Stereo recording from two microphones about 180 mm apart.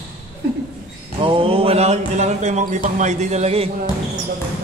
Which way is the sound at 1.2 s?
30° right (ahead or behind).